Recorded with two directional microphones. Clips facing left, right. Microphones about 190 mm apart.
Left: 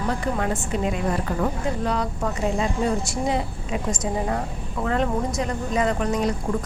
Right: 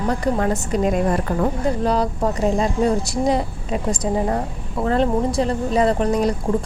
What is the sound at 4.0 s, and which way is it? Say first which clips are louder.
Speech: right 4 dB; 35° right (ahead or behind).